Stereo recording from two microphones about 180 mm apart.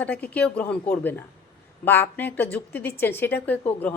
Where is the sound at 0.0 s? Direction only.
10° left (ahead or behind).